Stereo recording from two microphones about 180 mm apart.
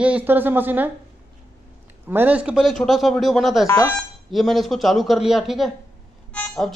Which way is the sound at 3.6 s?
15° left (ahead or behind).